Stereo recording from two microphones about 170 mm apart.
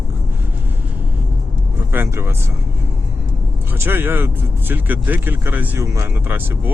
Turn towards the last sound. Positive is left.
turn(degrees=-15)  # may be behind; listen again after turning